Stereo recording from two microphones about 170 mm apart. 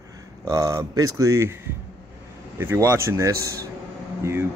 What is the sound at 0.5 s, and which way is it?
Speech, 20° right (ahead or behind).